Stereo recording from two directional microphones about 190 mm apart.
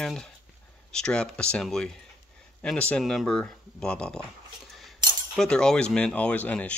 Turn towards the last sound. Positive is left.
turn(degrees=10)  # may be behind; listen again after turning